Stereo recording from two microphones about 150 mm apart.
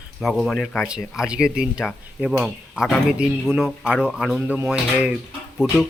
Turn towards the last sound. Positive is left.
turn(degrees=-5)  # may be behind; listen again after turning